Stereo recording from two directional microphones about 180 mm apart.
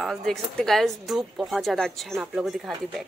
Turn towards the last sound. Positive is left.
turn(degrees=0)  # may be behind; listen again after turning